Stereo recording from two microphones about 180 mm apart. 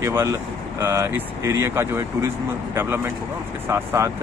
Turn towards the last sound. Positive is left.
turn(degrees=-15)  # may be behind; listen again after turning